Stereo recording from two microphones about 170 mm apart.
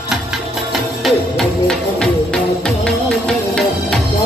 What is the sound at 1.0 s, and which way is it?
Music, centre (ahead or behind).